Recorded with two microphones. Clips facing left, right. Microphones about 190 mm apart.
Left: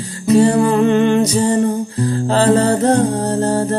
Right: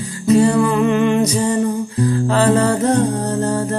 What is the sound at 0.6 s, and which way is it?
Music, 30° left (ahead or behind).